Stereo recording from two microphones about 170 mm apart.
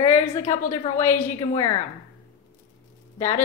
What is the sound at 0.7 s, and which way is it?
A woman's voice, 45° left (ahead or behind).